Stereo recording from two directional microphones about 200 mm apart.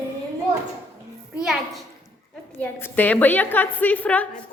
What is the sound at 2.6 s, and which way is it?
Speech, 10° left (ahead or behind).